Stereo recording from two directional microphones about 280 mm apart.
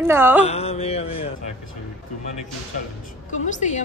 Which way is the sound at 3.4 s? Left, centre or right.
Left.